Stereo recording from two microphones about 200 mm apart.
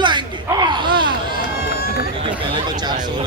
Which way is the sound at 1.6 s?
50° left (ahead or behind).